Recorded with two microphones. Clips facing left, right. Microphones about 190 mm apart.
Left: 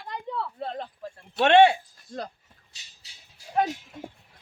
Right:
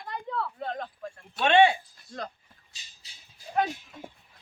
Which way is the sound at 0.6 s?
30° left (ahead or behind).